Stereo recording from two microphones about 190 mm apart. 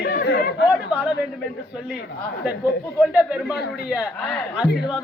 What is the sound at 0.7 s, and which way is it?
Speech, 5° right (ahead or behind).